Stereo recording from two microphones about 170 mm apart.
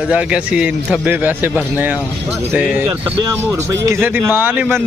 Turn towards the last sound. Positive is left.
turn(degrees=-10)  # may be behind; listen again after turning